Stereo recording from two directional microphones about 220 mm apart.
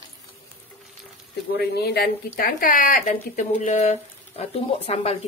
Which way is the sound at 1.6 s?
45° left (ahead or behind).